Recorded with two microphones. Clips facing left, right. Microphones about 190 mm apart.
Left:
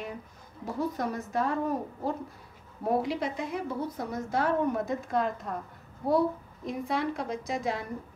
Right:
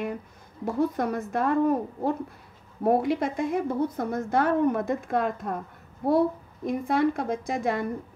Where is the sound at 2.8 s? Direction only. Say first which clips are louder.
Right 5 dB; 55° right (ahead or behind).